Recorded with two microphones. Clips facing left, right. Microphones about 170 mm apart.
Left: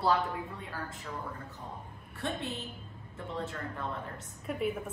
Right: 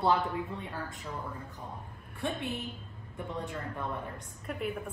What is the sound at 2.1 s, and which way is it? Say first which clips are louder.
A woman's voice: right 2 dB; 15° right (ahead or behind).